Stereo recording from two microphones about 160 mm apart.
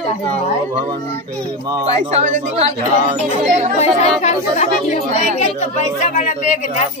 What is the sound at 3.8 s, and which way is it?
A woman's voice, 45° left (ahead or behind).